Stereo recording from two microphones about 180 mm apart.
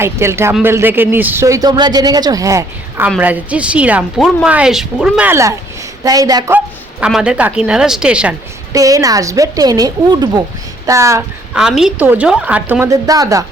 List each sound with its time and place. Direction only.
0.0 s a woman's voice: 15° right (ahead or behind)
7.0 s a woman's voice: 5° right (ahead or behind)
8.7 s a woman's voice: 20° right (ahead or behind)
11.5 s speech: 5° right (ahead or behind); by 13.4 s 20° right (ahead or behind)